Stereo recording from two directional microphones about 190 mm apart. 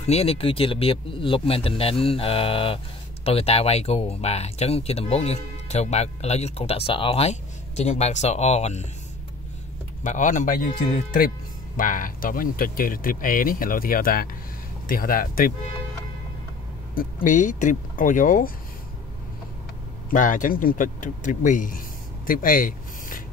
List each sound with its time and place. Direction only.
0.0 s speech: 30° left (ahead or behind)
10.0 s speech: 40° left (ahead or behind)
16.9 s speech: 45° left (ahead or behind)
20.1 s speech: 45° left (ahead or behind)